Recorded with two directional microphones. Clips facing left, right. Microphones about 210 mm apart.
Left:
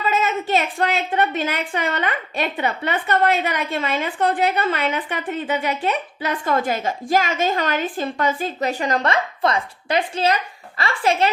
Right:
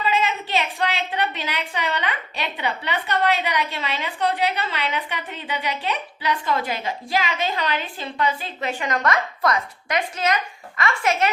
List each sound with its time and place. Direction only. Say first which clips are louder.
0.0 s a woman's voice: left 2 dB; 45° left (ahead or behind)